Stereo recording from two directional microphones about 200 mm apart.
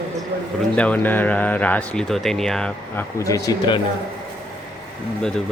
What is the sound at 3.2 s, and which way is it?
Speech, 15° left (ahead or behind).